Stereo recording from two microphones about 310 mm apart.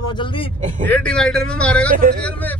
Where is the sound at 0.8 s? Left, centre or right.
Centre.